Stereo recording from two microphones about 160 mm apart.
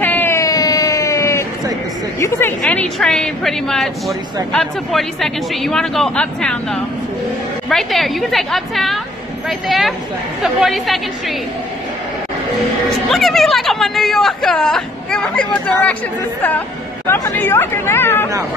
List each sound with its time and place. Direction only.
0.0 s a sound: 10° left (ahead or behind)
2.6 s speech: 5° left (ahead or behind)
13.1 s speech: centre (ahead or behind)
17.1 s speech: 15° left (ahead or behind)